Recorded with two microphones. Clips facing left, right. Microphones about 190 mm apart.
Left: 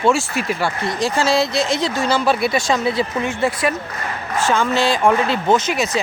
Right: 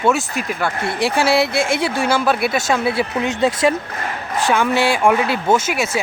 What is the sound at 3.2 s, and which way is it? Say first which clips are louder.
Speech: right 3 dB; 20° right (ahead or behind).